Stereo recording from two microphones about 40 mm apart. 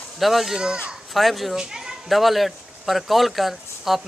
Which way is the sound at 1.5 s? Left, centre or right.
Centre.